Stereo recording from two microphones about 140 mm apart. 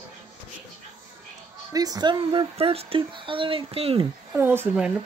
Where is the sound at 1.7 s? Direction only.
25° right (ahead or behind).